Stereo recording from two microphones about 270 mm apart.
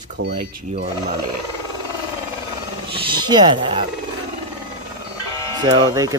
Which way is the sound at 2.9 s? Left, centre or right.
Centre.